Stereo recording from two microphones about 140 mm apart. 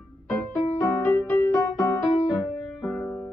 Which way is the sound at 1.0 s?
15° left (ahead or behind).